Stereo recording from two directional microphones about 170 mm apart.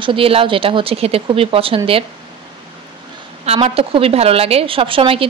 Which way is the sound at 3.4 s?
35° right (ahead or behind).